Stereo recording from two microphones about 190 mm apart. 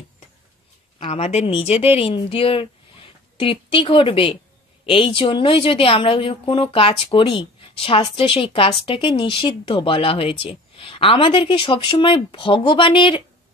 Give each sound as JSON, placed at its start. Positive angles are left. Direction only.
{"t": 0.9, "sound": "speech", "side_deg": 30}